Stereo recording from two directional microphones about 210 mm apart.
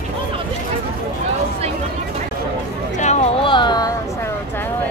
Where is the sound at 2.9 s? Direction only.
35° left (ahead or behind); by 4.3 s 15° left (ahead or behind).